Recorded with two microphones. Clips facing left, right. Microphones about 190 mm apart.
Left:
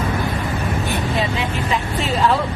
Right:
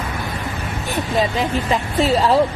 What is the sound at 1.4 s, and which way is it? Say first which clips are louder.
Speech: right 2 dB; 40° right (ahead or behind).